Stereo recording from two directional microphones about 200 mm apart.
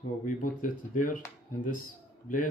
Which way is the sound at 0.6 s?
40° left (ahead or behind).